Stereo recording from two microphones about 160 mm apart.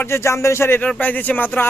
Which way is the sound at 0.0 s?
15° left (ahead or behind).